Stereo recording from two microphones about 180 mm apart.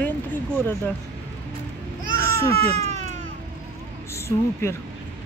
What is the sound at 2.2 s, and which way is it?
Baby cry, 15° left (ahead or behind).